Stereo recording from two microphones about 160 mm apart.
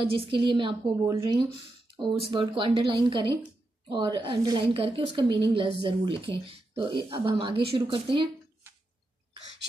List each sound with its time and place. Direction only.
0.0 s a woman's voice: 35° right (ahead or behind)
1.0 s speech: 20° right (ahead or behind)
1.9 s a woman's voice: 30° right (ahead or behind)